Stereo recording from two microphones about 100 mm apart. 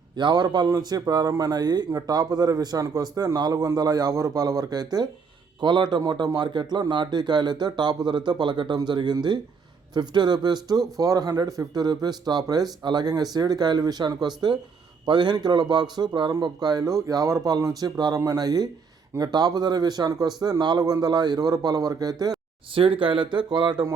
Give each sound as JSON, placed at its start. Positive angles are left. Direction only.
{"t": 0.2, "sound": "speech", "side_deg": -50}
{"t": 22.7, "sound": "speech", "side_deg": -65}